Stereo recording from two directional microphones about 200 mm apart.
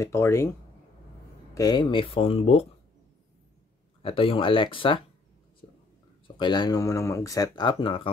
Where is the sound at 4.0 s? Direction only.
25° left (ahead or behind).